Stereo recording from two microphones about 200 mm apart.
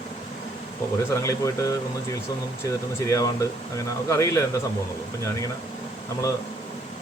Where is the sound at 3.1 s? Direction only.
15° left (ahead or behind).